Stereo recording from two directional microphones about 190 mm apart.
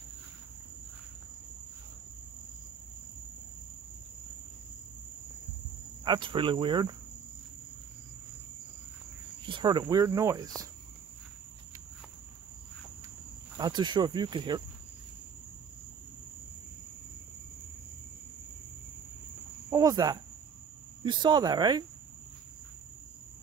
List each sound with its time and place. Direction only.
6.0 s speech: 25° right (ahead or behind)
9.5 s speech: 25° right (ahead or behind)
13.6 s speech: 20° right (ahead or behind)
19.7 s cricket: 20° right (ahead or behind)
21.0 s speech: 25° right (ahead or behind)